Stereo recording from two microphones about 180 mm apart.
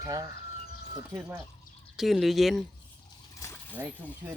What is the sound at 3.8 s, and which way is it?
Speech, 15° right (ahead or behind).